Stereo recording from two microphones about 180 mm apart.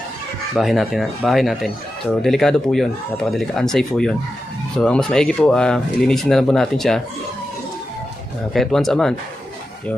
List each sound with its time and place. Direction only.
0.6 s speech: centre (ahead or behind)
8.5 s speech: centre (ahead or behind)